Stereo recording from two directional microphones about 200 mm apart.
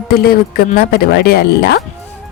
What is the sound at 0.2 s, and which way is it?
A woman's voice, 50° left (ahead or behind).